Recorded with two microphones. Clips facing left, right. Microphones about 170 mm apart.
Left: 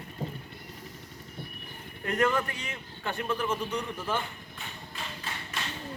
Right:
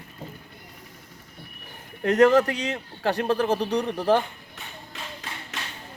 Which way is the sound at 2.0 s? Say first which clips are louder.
Right 10 dB; 75° right (ahead or behind).